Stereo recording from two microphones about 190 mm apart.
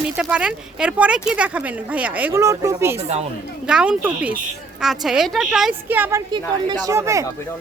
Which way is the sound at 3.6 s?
5° right (ahead or behind).